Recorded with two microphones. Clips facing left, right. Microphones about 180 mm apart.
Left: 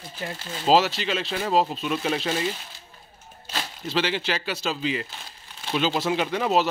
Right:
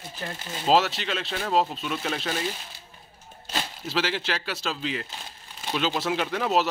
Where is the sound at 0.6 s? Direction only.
Centre (ahead or behind).